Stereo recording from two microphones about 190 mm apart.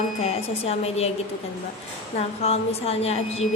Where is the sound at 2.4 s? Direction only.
35° left (ahead or behind).